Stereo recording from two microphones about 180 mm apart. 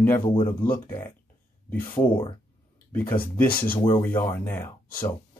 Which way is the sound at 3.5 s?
55° left (ahead or behind).